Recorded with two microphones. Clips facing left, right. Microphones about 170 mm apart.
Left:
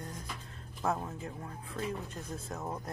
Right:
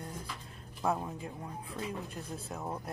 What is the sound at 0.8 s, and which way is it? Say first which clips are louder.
Speech: right 1 dB; 15° right (ahead or behind).